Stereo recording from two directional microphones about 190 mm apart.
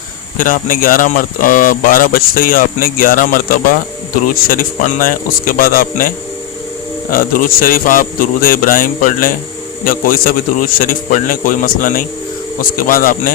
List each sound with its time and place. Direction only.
0.3 s speech: 45° left (ahead or behind)